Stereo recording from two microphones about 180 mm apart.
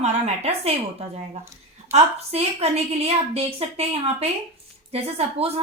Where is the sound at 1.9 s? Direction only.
35° right (ahead or behind).